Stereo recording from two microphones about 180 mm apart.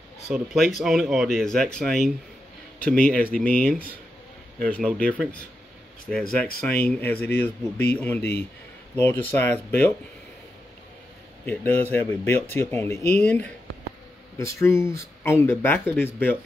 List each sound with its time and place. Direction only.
0.3 s speech: centre (ahead or behind)
6.8 s speech: 10° left (ahead or behind)
8.2 s a man's voice: 65° left (ahead or behind)
8.9 s speech: 10° left (ahead or behind)
11.4 s speech: 10° left (ahead or behind)